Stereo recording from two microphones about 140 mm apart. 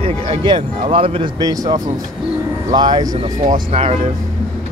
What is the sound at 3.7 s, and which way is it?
Speech, 45° right (ahead or behind).